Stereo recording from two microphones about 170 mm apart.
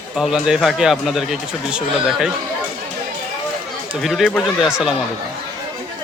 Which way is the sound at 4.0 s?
Centre (ahead or behind).